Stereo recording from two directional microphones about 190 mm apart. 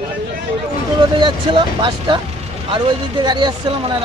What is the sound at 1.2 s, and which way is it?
Speech, 25° right (ahead or behind).